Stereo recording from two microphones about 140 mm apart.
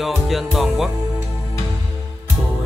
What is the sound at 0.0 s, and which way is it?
Music, centre (ahead or behind).